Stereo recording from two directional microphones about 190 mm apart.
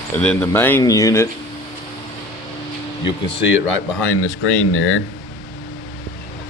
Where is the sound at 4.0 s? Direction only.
90° left.